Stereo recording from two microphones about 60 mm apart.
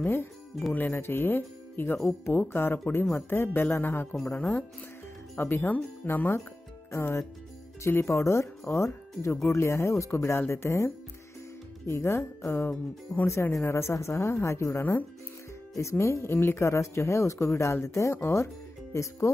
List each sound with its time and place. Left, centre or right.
0.0 s speech: left
4.4 s speech: left
6.9 s speech: left
11.9 s speech: left
12.6 s speech: left
13.3 s speech: left
16.6 s speech: left